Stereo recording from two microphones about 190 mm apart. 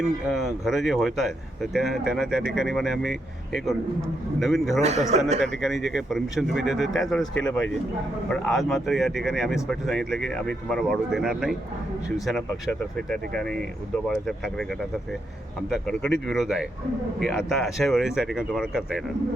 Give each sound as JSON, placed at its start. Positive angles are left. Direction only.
{"t": 0.0, "sound": "a man's voice", "side_deg": 0}
{"t": 4.8, "sound": "a man's voice", "side_deg": -35}
{"t": 5.6, "sound": "a man's voice", "side_deg": 0}
{"t": 15.7, "sound": "a man's voice", "side_deg": 5}